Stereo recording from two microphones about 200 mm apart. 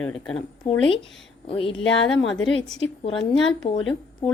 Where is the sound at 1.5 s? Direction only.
25° left (ahead or behind).